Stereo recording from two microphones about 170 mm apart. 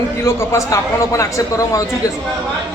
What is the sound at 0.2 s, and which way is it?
A man's voice, 15° left (ahead or behind).